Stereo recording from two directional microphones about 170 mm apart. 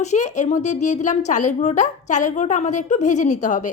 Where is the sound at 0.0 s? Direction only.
45° left (ahead or behind).